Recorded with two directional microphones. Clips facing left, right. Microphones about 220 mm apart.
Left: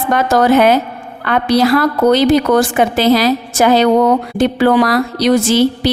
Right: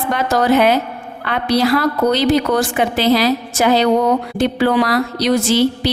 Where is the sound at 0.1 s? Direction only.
50° left (ahead or behind).